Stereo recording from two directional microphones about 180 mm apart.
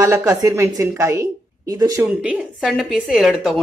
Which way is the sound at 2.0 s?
10° right (ahead or behind).